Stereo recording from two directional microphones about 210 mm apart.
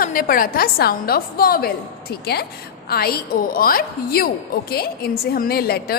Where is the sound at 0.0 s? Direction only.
40° left (ahead or behind).